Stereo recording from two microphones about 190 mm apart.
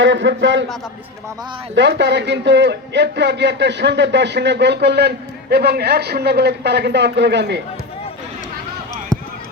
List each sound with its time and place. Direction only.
0.0 s a man's voice: 70° right (ahead or behind)
1.7 s a man's voice: 65° right (ahead or behind)